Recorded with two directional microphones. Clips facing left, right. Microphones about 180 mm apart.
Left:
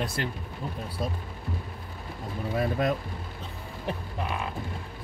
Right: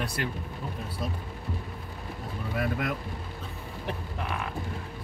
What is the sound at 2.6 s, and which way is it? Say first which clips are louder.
Speech: left 4 dB; 30° left (ahead or behind).